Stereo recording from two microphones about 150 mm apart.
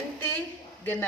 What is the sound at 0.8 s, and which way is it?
Speech, 15° left (ahead or behind).